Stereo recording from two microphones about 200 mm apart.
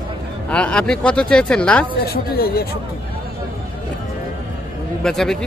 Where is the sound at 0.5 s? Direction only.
5° left (ahead or behind).